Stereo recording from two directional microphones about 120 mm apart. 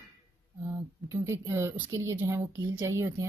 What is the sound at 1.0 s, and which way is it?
A woman's voice, 25° right (ahead or behind).